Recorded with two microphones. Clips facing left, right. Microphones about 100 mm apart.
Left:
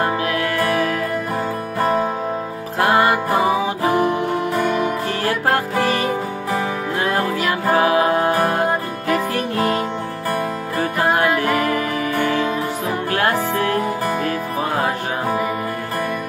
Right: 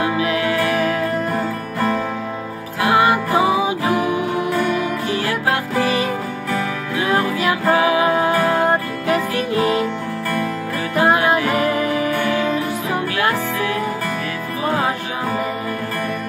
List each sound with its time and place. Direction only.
0.0 s music: 40° left (ahead or behind)
1.8 s music: 20° left (ahead or behind)
2.8 s music: 35° left (ahead or behind)
7.7 s music: 40° left (ahead or behind)
9.3 s music: 35° left (ahead or behind)
11.5 s music: 40° left (ahead or behind)
13.1 s music: 40° left (ahead or behind)